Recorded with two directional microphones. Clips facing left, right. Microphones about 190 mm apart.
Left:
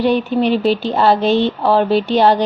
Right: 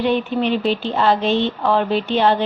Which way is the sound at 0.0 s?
40° left (ahead or behind).